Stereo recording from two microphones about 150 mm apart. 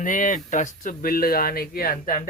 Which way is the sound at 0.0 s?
60° left (ahead or behind).